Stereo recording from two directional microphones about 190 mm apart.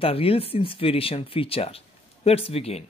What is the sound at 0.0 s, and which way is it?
Speech, 30° left (ahead or behind).